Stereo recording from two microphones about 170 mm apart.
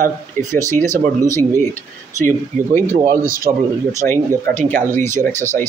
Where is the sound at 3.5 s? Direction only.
45° right (ahead or behind).